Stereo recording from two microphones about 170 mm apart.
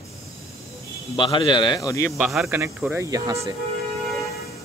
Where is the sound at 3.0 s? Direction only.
20° right (ahead or behind).